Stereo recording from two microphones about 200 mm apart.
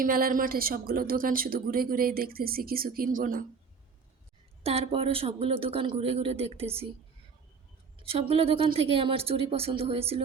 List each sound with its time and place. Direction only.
0.0 s speech: 45° right (ahead or behind)
4.6 s speech: 30° right (ahead or behind)
7.9 s a sound: 30° right (ahead or behind)
8.3 s speech: 30° right (ahead or behind)